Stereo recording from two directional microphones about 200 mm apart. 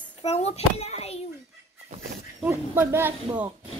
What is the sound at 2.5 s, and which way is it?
Speech, 10° right (ahead or behind).